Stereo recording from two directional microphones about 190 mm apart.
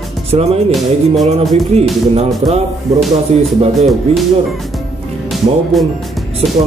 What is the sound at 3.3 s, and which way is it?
Speech, 35° right (ahead or behind).